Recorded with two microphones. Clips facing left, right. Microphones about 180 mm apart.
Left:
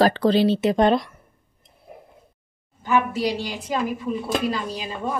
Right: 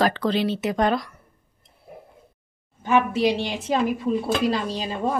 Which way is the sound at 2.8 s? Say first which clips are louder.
Right 2 dB; 25° right (ahead or behind).